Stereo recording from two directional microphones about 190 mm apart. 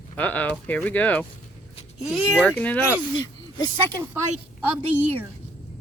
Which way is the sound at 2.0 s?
5° right (ahead or behind).